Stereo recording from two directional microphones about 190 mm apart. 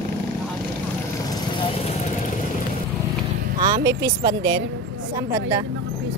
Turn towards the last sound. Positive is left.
turn(degrees=-20)  # may be behind; listen again after turning